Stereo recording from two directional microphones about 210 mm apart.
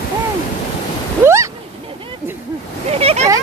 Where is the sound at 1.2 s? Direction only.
15° right (ahead or behind).